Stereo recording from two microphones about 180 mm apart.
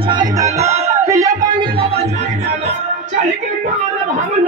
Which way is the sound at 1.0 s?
20° right (ahead or behind).